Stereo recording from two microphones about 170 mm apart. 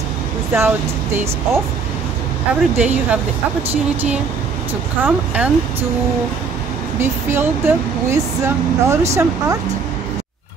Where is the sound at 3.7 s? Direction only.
10° right (ahead or behind).